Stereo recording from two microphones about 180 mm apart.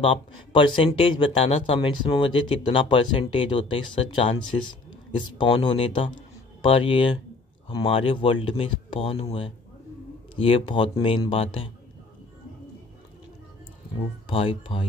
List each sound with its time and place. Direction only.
0.0 s speech: 30° left (ahead or behind)
14.2 s speech: 30° left (ahead or behind)